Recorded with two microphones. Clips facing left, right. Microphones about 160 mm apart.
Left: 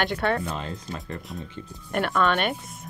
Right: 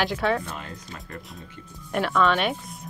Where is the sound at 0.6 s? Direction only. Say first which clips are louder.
Left 5 dB; 30° left (ahead or behind).